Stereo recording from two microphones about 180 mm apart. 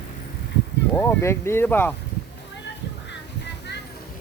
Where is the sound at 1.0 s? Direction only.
15° left (ahead or behind).